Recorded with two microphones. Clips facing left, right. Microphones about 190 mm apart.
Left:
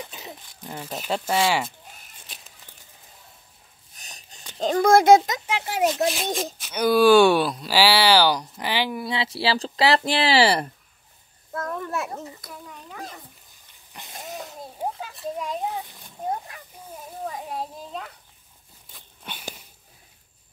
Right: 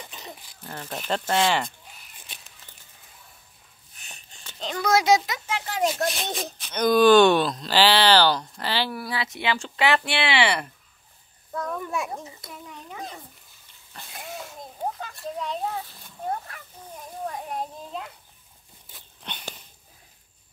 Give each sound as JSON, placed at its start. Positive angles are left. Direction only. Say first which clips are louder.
{"t": 0.1, "sound": "speech", "louder": "left 1 dB", "side_deg": 10}
{"t": 3.9, "sound": "a sound", "louder": "left 1 dB", "side_deg": 40}
{"t": 4.6, "sound": "a child's voice", "louder": "left 6 dB", "side_deg": 45}
{"t": 5.5, "sound": "speech", "louder": "left 2 dB", "side_deg": 15}
{"t": 5.9, "sound": "speech", "louder": "left 4 dB", "side_deg": 0}
{"t": 11.5, "sound": "a child's voice", "louder": "even", "side_deg": 5}
{"t": 12.4, "sound": "a child's voice", "louder": "even", "side_deg": -20}
{"t": 13.9, "sound": "speech", "louder": "left 1 dB", "side_deg": 15}
{"t": 14.8, "sound": "a sound", "louder": "left 1 dB", "side_deg": 5}
{"t": 17.3, "sound": "children playing", "louder": "even", "side_deg": 0}
{"t": 18.9, "sound": "a sound", "louder": "even", "side_deg": 0}